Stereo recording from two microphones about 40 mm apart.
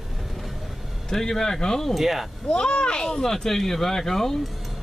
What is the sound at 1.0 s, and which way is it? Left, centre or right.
Speech, centre.